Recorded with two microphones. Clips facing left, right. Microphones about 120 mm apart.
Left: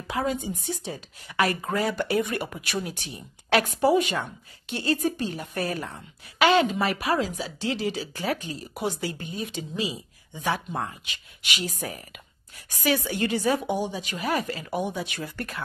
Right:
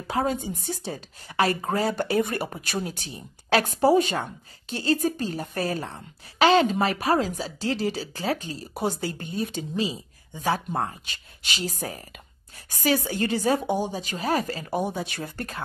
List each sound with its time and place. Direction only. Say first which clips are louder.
0.0 s speech: right 2 dB; 35° right (ahead or behind)